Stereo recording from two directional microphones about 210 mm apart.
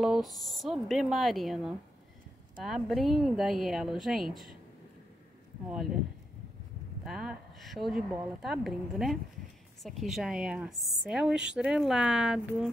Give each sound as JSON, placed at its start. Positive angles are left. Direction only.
{"t": 0.0, "sound": "a woman's voice", "side_deg": 0}
{"t": 7.1, "sound": "a woman's voice", "side_deg": 0}